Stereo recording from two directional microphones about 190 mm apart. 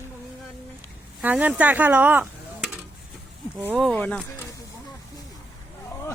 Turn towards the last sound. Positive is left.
turn(degrees=10)  # may be behind; listen again after turning